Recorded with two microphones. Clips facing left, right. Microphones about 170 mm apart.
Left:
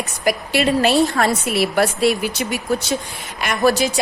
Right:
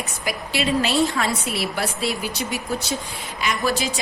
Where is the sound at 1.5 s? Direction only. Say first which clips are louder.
Left 8 dB; 70° left (ahead or behind).